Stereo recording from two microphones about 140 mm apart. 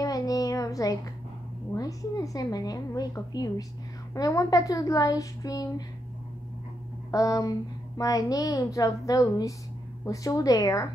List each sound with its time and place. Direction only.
0.0 s a sound: 25° left (ahead or behind)
1.8 s a woman's voice: 25° left (ahead or behind)
7.1 s a woman's voice: 25° left (ahead or behind)